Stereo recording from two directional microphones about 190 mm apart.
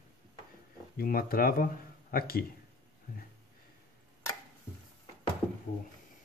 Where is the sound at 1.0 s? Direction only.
50° left (ahead or behind).